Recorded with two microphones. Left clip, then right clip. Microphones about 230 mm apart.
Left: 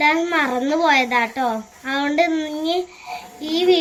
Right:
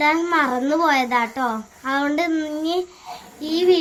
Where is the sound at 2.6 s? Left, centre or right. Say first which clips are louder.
Left 3 dB; right.